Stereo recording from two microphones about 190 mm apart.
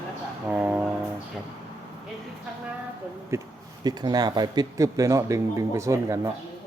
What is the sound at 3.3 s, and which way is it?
Speech, 15° right (ahead or behind).